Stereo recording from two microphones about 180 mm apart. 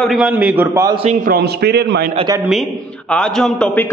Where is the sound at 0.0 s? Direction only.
Centre (ahead or behind).